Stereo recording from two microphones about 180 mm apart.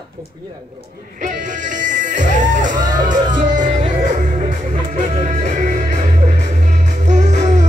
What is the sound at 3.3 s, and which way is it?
Music, 45° right (ahead or behind).